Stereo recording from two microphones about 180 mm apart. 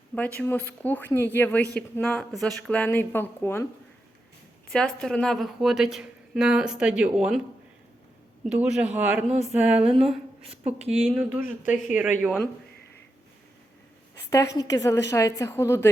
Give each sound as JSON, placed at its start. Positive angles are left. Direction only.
{"t": 0.1, "sound": "speech", "side_deg": 10}
{"t": 4.7, "sound": "a woman's voice", "side_deg": 5}
{"t": 8.4, "sound": "a woman's voice", "side_deg": -5}
{"t": 10.8, "sound": "speech", "side_deg": -35}
{"t": 11.1, "sound": "speech", "side_deg": -5}
{"t": 14.3, "sound": "speech", "side_deg": 20}